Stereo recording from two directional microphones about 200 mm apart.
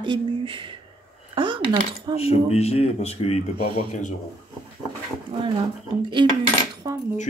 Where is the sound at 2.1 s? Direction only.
30° left (ahead or behind).